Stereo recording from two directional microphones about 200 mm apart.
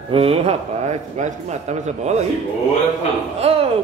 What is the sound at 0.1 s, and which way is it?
Speech, 30° right (ahead or behind).